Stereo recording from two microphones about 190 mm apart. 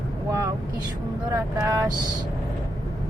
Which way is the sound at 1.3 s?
15° right (ahead or behind).